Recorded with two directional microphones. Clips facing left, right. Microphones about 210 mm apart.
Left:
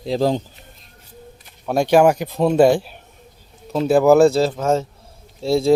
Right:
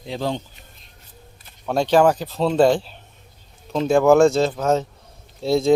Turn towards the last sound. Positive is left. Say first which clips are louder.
# left 1 dB
turn(degrees=0)  # may be behind; listen again after turning